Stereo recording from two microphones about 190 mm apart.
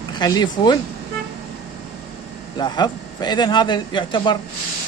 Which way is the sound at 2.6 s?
20° left (ahead or behind).